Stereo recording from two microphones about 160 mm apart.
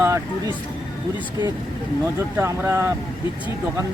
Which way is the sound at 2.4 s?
15° right (ahead or behind).